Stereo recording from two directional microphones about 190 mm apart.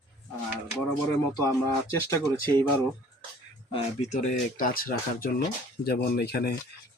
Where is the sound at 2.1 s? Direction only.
15° left (ahead or behind).